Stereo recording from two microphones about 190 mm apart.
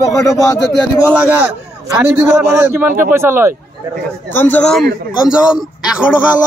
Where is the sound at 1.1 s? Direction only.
10° right (ahead or behind).